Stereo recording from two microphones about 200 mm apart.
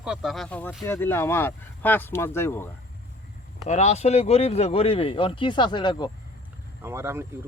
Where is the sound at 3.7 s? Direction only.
35° left (ahead or behind).